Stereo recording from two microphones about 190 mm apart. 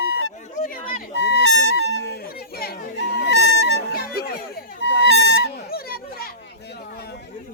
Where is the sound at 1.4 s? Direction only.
80° right.